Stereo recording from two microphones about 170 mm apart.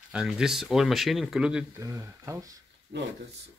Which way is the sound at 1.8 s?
20° right (ahead or behind).